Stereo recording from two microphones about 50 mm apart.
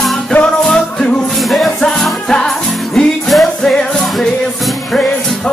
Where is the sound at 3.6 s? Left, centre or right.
Centre.